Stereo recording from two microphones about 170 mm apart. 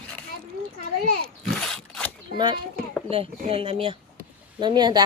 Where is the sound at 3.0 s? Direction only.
35° right (ahead or behind).